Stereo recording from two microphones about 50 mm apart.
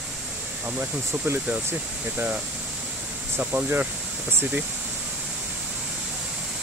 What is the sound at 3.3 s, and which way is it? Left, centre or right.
Speech, right.